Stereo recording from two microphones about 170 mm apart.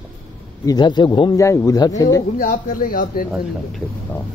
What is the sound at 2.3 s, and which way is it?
Speech, 55° left (ahead or behind).